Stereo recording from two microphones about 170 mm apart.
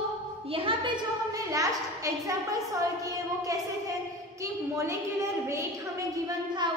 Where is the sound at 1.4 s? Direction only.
20° right (ahead or behind).